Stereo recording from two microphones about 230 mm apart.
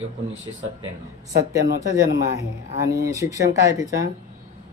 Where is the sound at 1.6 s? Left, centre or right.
Right.